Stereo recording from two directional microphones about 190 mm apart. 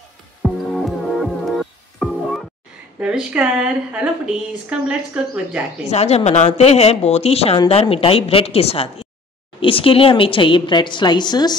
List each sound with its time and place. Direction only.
0.4 s music: centre (ahead or behind)
3.0 s a woman's voice: 5° right (ahead or behind)
5.9 s a woman's voice: 35° left (ahead or behind)